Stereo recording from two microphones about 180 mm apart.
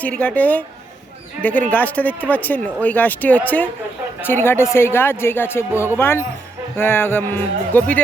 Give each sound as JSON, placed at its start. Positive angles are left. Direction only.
{"t": 0.0, "sound": "speech", "side_deg": 10}